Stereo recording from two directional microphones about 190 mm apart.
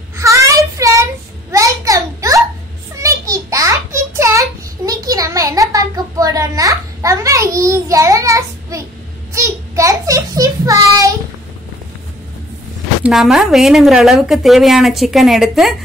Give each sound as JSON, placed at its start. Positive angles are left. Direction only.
{"t": 0.2, "sound": "child singing", "side_deg": -15}
{"t": 1.5, "sound": "a sound", "side_deg": -15}
{"t": 13.0, "sound": "a woman's voice", "side_deg": 0}